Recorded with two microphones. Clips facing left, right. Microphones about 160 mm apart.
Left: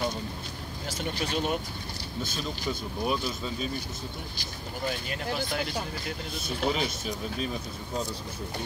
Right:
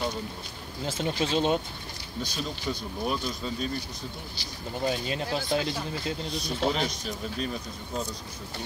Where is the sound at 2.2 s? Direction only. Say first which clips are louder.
Right 1 dB; 5° left (ahead or behind).